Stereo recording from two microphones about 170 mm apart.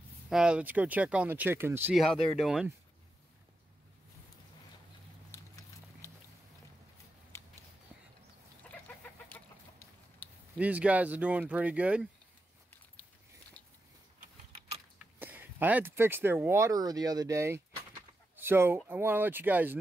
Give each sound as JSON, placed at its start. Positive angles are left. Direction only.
{"t": 0.3, "sound": "speech", "side_deg": -5}
{"t": 2.0, "sound": "speech", "side_deg": 0}
{"t": 7.3, "sound": "a sound", "side_deg": 15}
{"t": 8.6, "sound": "chicken", "side_deg": 5}
{"t": 10.6, "sound": "speech", "side_deg": -10}
{"t": 15.1, "sound": "speech", "side_deg": -10}
{"t": 18.3, "sound": "a sound", "side_deg": -15}
{"t": 18.9, "sound": "speech", "side_deg": -10}